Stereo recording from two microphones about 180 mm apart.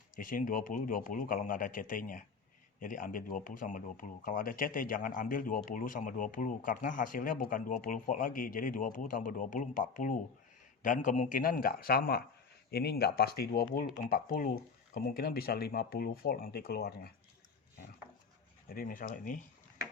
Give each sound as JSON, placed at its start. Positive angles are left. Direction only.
{"t": 0.2, "sound": "speech", "side_deg": 50}
{"t": 18.7, "sound": "speech", "side_deg": 50}